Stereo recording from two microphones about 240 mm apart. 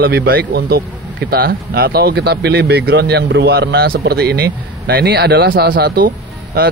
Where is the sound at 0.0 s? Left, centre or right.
Right.